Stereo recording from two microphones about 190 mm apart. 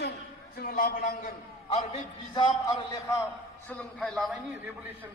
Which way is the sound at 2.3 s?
25° left (ahead or behind).